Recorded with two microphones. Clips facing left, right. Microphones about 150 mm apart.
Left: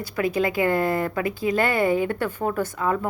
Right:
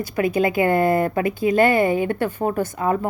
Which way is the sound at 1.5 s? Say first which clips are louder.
Right 4 dB; 50° right (ahead or behind).